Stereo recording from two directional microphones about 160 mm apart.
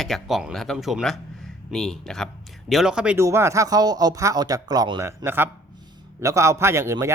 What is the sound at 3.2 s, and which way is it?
A man's voice, 20° right (ahead or behind).